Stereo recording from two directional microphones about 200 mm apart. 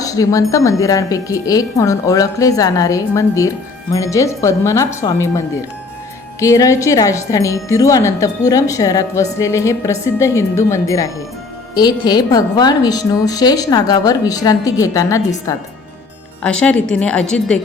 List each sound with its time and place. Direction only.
0.0 s speech: 15° left (ahead or behind)
6.4 s a woman's voice: 15° left (ahead or behind)
16.4 s a woman's voice: 5° left (ahead or behind)